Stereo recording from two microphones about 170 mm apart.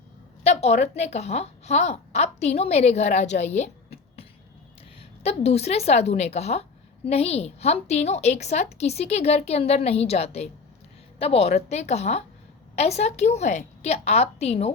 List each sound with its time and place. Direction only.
0.4 s a woman's voice: 40° left (ahead or behind)